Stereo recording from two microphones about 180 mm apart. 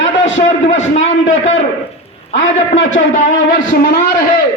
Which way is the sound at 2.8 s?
90° left.